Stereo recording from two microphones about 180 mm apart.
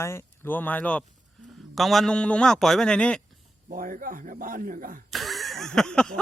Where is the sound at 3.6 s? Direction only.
50° right (ahead or behind).